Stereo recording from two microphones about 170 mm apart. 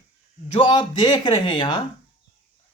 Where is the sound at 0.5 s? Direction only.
25° left (ahead or behind).